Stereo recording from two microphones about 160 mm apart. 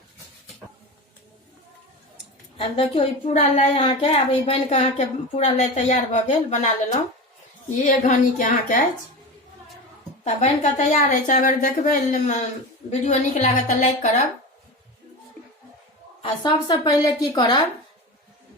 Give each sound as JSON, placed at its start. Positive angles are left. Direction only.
{"t": 2.6, "sound": "a woman's voice", "side_deg": 40}
{"t": 7.9, "sound": "a woman's voice", "side_deg": 55}
{"t": 10.2, "sound": "a woman's voice", "side_deg": 45}
{"t": 16.2, "sound": "a woman's voice", "side_deg": 25}